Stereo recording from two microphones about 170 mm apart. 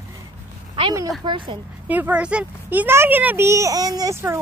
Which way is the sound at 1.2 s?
25° right (ahead or behind).